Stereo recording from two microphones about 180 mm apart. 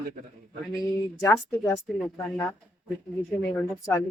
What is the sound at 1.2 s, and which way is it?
Speech, 15° left (ahead or behind).